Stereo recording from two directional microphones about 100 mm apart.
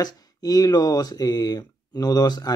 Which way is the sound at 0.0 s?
40° left (ahead or behind).